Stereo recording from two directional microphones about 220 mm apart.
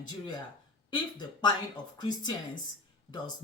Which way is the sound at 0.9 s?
20° left (ahead or behind).